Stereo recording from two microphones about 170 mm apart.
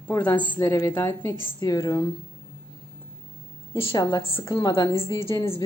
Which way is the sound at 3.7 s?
30° left (ahead or behind).